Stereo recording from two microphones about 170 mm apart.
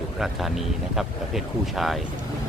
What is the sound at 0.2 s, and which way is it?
Speech, centre (ahead or behind).